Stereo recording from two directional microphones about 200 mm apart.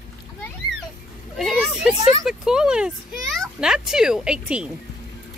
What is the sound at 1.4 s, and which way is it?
Speech, centre (ahead or behind).